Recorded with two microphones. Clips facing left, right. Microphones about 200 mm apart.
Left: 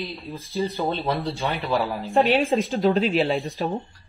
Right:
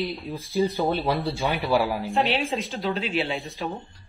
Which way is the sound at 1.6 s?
15° right (ahead or behind).